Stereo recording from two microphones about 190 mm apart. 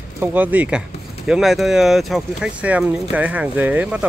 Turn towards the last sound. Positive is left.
turn(degrees=-10)  # may be behind; listen again after turning